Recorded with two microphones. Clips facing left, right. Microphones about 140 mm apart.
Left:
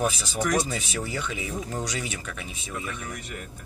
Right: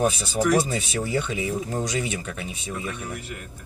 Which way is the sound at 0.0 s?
35° right (ahead or behind).